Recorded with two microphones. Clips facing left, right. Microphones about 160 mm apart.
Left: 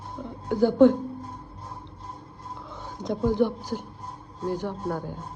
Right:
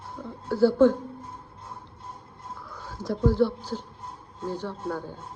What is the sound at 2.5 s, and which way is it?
Speech, 20° left (ahead or behind).